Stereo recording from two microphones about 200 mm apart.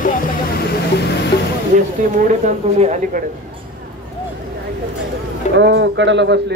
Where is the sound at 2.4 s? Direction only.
35° right (ahead or behind).